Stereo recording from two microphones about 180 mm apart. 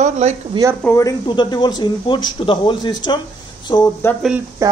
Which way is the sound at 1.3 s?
25° left (ahead or behind).